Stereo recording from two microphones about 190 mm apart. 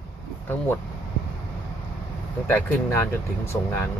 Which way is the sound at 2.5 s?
10° left (ahead or behind).